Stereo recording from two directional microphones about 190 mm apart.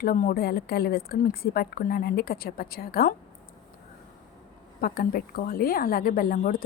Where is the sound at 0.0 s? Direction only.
45° left (ahead or behind).